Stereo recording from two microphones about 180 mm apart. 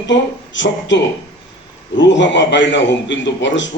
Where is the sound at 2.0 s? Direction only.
80° left.